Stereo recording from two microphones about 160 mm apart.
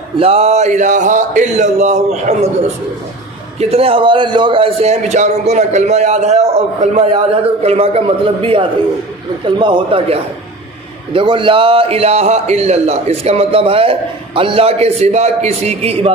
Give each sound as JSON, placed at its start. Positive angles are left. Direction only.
{"t": 0.2, "sound": "speech", "side_deg": -40}
{"t": 3.5, "sound": "a man's voice", "side_deg": -40}
{"t": 11.1, "sound": "a man's voice", "side_deg": -30}